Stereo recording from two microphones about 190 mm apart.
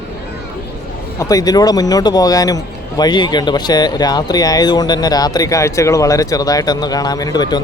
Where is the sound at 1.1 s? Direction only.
20° left (ahead or behind).